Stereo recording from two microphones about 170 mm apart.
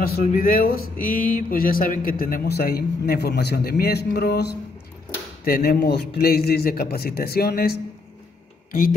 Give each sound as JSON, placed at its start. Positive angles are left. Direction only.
{"t": 0.0, "sound": "speech", "side_deg": 60}
{"t": 5.4, "sound": "speech", "side_deg": 60}